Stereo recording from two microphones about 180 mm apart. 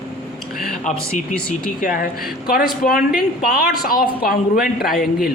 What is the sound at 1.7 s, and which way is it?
A man's voice, 50° left (ahead or behind).